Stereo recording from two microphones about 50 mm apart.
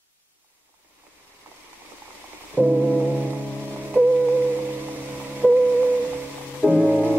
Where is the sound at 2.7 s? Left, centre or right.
Left.